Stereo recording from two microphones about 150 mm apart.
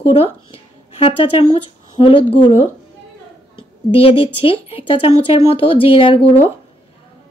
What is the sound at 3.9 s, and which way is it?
Speech, 40° left (ahead or behind).